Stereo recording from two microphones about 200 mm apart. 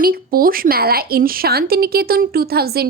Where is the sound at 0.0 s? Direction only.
45° right (ahead or behind).